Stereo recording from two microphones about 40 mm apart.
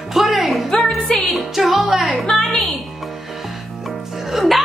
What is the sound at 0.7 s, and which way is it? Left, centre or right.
Music, centre.